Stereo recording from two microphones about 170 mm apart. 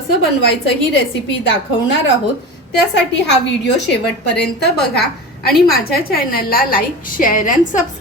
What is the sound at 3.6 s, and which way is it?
A woman's voice, 90° left.